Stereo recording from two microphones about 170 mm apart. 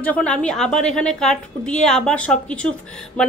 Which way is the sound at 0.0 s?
5° left (ahead or behind).